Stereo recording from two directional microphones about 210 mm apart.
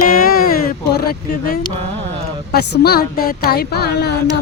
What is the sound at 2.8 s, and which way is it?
Speech, 45° left (ahead or behind).